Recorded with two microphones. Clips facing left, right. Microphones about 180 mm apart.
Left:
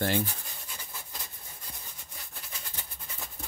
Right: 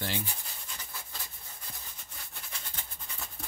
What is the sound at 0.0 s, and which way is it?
Speech, 50° left (ahead or behind).